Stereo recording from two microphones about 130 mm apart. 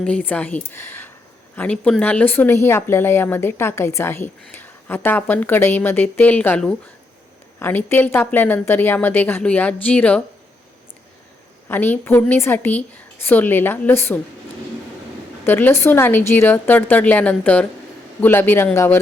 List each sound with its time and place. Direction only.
0.0 s speech: 10° left (ahead or behind)
11.7 s speech: 15° left (ahead or behind)
15.4 s speech: 15° left (ahead or behind)